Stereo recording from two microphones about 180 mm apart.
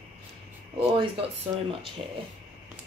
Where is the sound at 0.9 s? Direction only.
30° right (ahead or behind).